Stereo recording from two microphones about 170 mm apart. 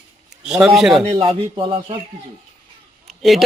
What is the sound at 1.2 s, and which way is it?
Speech, 30° right (ahead or behind).